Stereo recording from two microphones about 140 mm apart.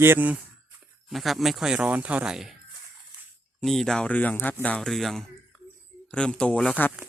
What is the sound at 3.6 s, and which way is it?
Speech, centre (ahead or behind).